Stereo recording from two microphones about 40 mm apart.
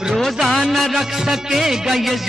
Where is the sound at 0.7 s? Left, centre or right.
Centre.